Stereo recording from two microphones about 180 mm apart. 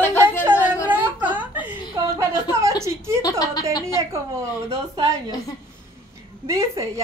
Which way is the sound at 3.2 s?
20° left (ahead or behind).